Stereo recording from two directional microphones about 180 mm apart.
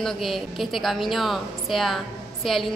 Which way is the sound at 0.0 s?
Centre (ahead or behind).